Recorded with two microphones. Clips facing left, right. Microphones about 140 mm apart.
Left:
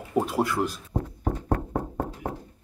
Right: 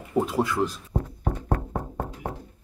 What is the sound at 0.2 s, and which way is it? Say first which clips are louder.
Speech: right 1 dB; 10° left (ahead or behind).